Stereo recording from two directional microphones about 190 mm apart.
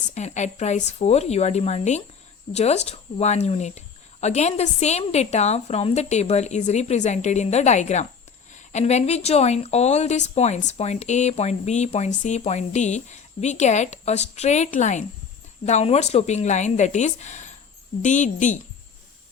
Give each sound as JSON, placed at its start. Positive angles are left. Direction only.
{"t": 0.1, "sound": "speech", "side_deg": 35}